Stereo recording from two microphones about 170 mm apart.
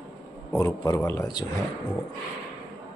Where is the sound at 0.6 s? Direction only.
20° left (ahead or behind).